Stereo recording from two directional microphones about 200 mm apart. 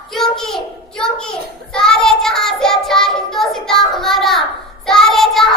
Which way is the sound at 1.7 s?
5° left (ahead or behind).